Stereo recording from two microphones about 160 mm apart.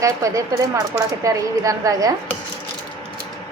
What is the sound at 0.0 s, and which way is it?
A woman's voice, 20° right (ahead or behind).